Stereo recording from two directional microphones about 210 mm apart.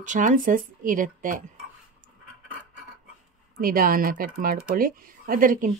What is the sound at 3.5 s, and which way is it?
Speech, 45° right (ahead or behind).